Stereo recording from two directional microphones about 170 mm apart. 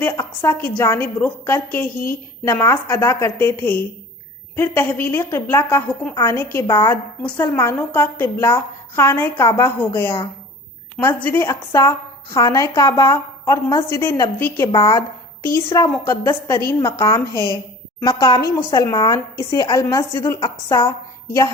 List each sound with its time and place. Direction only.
0.0 s a woman's voice: 15° left (ahead or behind)
5.9 s a woman's voice: 5° left (ahead or behind); by 20.9 s 20° left (ahead or behind)